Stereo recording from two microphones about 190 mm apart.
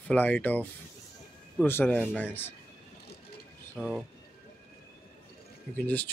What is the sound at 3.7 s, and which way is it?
Speech, centre (ahead or behind).